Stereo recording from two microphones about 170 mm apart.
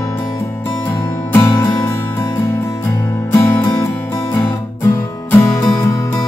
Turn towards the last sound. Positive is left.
turn(degrees=15)  # may be behind; listen again after turning